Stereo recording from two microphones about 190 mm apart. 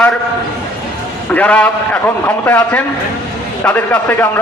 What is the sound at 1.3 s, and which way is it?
A man's voice, 5° left (ahead or behind).